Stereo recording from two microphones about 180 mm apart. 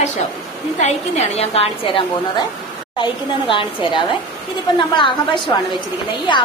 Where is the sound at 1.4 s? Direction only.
35° left (ahead or behind).